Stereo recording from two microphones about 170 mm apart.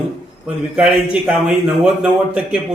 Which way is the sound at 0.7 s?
5° right (ahead or behind).